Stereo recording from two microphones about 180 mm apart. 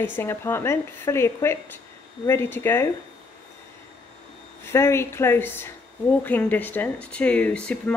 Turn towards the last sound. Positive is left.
turn(degrees=5)  # may be behind; listen again after turning